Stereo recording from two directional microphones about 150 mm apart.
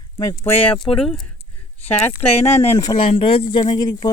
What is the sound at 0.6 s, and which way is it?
Speech, 5° left (ahead or behind).